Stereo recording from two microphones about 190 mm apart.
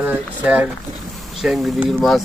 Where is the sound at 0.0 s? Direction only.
10° right (ahead or behind).